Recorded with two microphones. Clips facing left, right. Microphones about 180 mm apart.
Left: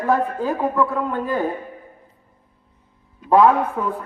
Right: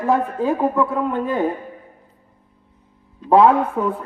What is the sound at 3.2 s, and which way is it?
Speech, 30° right (ahead or behind).